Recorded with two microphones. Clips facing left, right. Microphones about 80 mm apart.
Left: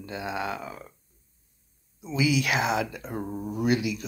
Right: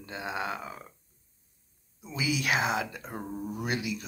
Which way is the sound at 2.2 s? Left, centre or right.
Right.